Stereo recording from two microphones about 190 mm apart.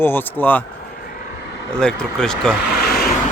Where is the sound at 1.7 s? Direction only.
5° left (ahead or behind).